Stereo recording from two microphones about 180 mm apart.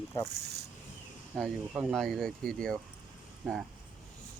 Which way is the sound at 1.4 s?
Centre (ahead or behind).